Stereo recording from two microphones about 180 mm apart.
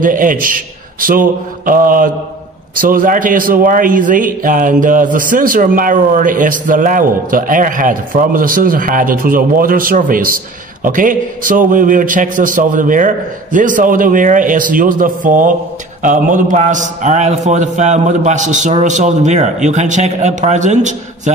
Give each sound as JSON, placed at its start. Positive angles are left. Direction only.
{"t": 0.0, "sound": "a man's voice", "side_deg": -50}